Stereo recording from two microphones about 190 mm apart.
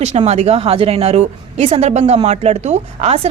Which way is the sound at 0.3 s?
35° right (ahead or behind).